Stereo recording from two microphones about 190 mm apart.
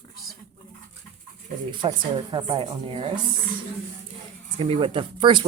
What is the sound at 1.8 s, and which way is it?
Speech, 30° right (ahead or behind).